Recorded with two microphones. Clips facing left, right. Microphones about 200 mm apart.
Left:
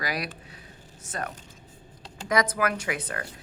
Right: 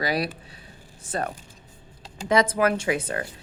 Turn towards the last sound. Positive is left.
turn(degrees=-25)  # may be behind; listen again after turning